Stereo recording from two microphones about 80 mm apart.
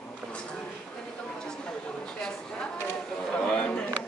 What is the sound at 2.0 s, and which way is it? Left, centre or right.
Speech, centre.